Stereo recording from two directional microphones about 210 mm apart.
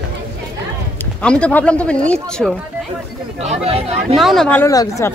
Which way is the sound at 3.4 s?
30° right (ahead or behind).